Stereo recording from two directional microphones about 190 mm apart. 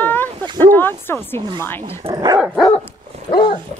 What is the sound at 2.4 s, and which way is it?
Speech, centre (ahead or behind).